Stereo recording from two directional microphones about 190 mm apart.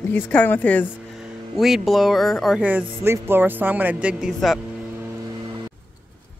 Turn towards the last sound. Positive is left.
turn(degrees=0)  # may be behind; listen again after turning